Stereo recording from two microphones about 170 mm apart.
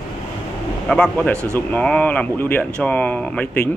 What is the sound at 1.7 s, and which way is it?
Speech, 10° left (ahead or behind).